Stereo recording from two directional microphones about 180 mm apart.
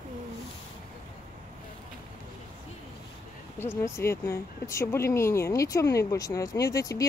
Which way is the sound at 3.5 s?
15° left (ahead or behind).